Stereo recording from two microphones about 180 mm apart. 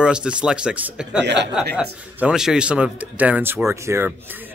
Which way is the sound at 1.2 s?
70° right (ahead or behind).